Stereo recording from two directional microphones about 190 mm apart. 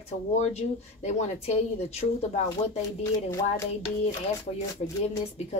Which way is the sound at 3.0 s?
15° left (ahead or behind).